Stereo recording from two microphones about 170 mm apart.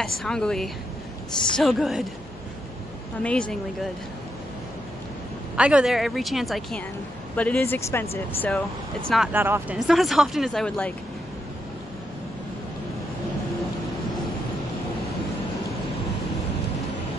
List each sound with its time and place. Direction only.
0.0 s a woman's voice: 5° left (ahead or behind)
3.2 s speech: 5° left (ahead or behind)
5.6 s a woman's voice: 5° right (ahead or behind); by 8.5 s 15° left (ahead or behind)
8.5 s a woman's voice: 5° left (ahead or behind)
9.3 s speech: 10° right (ahead or behind)
9.8 s a woman's voice: centre (ahead or behind)